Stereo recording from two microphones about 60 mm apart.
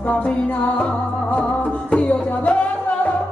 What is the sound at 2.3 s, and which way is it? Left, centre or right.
Music, left.